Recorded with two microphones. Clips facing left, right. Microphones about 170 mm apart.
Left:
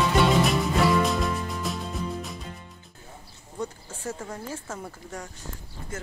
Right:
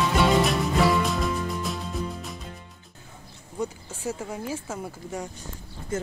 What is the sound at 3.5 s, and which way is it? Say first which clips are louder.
Speech: right 3 dB; 10° right (ahead or behind).